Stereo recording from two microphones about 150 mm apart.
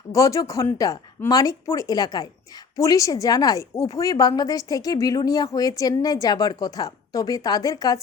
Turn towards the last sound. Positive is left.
turn(degrees=25)  # may be behind; listen again after turning